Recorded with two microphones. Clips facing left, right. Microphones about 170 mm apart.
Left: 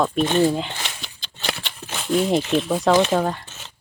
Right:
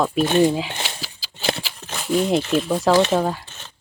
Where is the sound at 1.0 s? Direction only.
5° right (ahead or behind).